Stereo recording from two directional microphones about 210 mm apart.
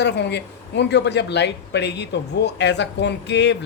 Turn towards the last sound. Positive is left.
turn(degrees=55)  # may be behind; listen again after turning